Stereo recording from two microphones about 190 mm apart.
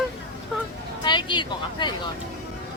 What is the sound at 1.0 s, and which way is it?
Speech, 25° left (ahead or behind).